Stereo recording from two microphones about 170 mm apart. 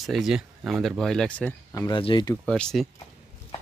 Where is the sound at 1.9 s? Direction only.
30° left (ahead or behind).